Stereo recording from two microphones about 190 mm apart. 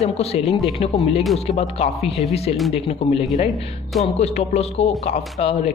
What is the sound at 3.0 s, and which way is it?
Speech, 30° left (ahead or behind).